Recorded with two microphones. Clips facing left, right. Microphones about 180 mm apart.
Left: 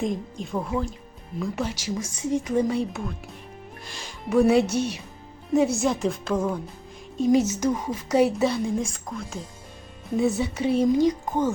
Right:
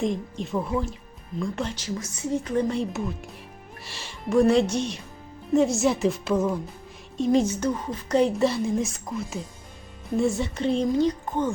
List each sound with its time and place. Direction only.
0.0 s a woman's voice: centre (ahead or behind)
7.3 s a woman's voice: 5° left (ahead or behind)